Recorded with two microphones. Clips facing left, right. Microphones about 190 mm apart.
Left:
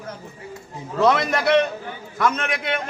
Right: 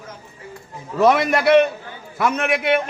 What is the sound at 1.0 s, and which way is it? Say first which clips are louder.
A man's voice: right 3 dB; 10° right (ahead or behind).